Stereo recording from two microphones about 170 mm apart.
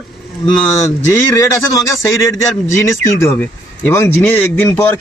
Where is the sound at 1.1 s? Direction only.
15° left (ahead or behind).